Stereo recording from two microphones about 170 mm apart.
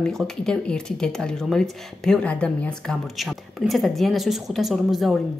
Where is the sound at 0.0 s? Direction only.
5° left (ahead or behind).